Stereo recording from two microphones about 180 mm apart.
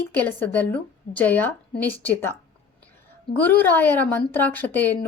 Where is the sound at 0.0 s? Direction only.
10° left (ahead or behind).